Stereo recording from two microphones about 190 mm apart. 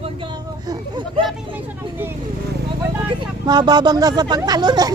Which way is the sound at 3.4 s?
20° right (ahead or behind).